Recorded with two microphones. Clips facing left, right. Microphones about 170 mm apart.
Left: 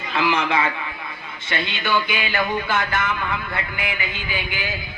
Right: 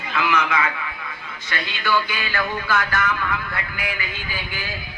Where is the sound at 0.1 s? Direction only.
30° left (ahead or behind).